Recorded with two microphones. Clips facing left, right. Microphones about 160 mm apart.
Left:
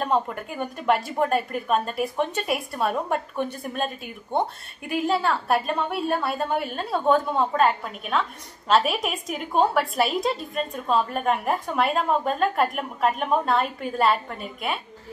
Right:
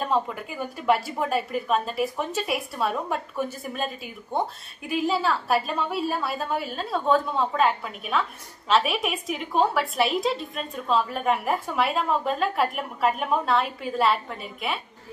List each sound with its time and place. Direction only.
0.0 s a woman's voice: centre (ahead or behind)